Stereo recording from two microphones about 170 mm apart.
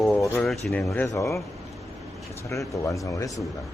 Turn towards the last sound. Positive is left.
turn(degrees=20)  # may be behind; listen again after turning